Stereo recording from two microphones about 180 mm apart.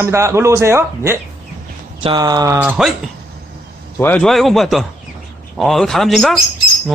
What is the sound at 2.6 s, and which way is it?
Speech, 5° right (ahead or behind).